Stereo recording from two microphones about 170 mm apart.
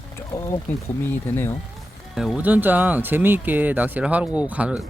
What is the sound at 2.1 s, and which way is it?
Speech, 5° right (ahead or behind).